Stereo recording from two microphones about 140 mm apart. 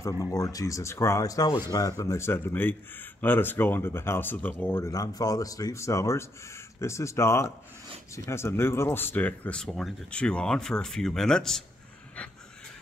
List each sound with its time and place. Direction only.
0.2 s speech: 25° left (ahead or behind); by 11.6 s 5° left (ahead or behind)